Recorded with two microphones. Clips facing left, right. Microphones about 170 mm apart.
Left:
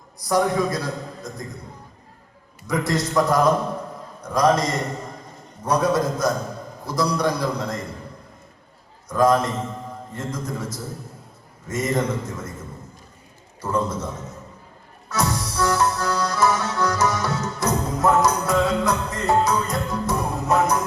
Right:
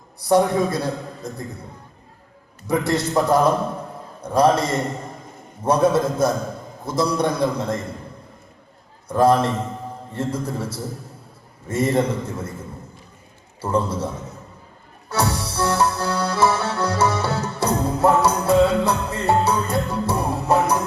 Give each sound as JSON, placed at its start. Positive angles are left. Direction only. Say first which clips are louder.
{"t": 0.2, "sound": "a man's voice", "louder": "right 3 dB", "side_deg": -30}
{"t": 2.6, "sound": "a man's voice", "louder": "right 2 dB", "side_deg": -30}
{"t": 9.0, "sound": "a man's voice", "louder": "right 2 dB", "side_deg": -30}
{"t": 13.6, "sound": "a man's voice", "louder": "right 2 dB", "side_deg": -30}
{"t": 15.1, "sound": "music", "louder": "right 1 dB", "side_deg": -30}